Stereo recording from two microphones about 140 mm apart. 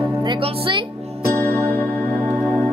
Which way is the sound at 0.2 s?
35° right (ahead or behind).